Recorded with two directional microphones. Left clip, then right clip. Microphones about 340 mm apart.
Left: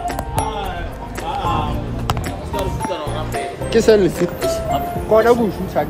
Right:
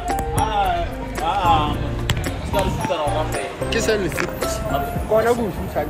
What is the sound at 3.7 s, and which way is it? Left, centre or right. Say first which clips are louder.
Music: left 8 dB; left.